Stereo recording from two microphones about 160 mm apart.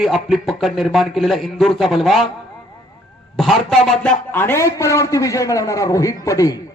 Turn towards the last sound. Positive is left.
turn(degrees=20)  # may be behind; listen again after turning